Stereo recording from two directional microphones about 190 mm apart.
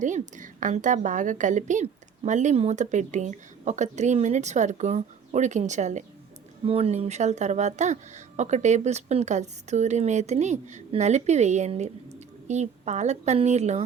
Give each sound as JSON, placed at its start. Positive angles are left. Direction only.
{"t": 0.0, "sound": "a woman's voice", "side_deg": -40}